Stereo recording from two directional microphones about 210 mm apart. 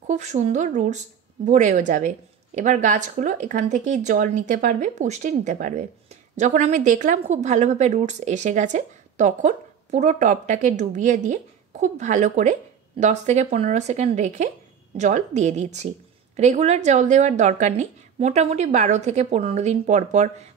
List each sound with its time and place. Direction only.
0.0 s a woman's voice: 35° right (ahead or behind)